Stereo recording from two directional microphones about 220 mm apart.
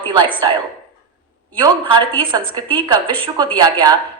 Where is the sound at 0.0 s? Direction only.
20° right (ahead or behind).